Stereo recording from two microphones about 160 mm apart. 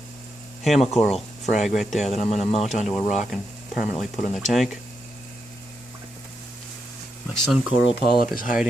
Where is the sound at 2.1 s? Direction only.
45° left (ahead or behind).